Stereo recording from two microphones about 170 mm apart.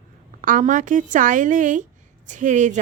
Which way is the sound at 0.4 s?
50° right (ahead or behind).